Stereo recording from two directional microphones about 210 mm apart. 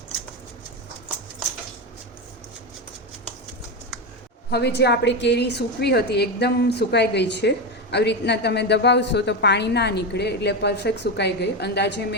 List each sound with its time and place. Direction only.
4.5 s a woman's voice: 50° left (ahead or behind)